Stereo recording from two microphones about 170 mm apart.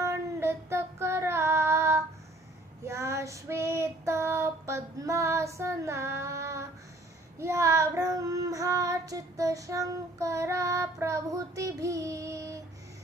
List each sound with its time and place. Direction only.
0.0 s child singing: 15° right (ahead or behind)